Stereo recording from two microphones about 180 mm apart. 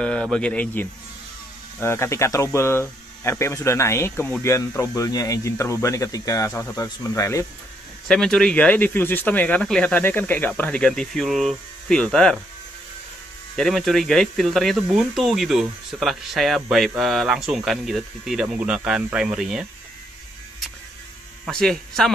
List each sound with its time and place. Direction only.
0.0 s speech: 5° left (ahead or behind)
8.1 s speech: 5° left (ahead or behind)
13.6 s speech: centre (ahead or behind)
21.5 s speech: 5° left (ahead or behind)